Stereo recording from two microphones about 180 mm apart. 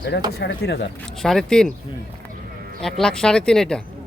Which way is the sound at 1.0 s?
Centre (ahead or behind).